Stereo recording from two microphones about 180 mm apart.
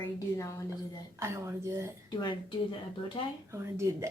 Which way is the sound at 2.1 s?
25° left (ahead or behind).